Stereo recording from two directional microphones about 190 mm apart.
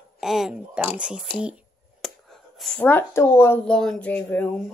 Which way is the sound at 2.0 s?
Centre (ahead or behind).